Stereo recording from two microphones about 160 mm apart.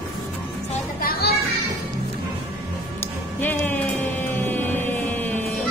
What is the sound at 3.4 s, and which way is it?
Music, 10° left (ahead or behind).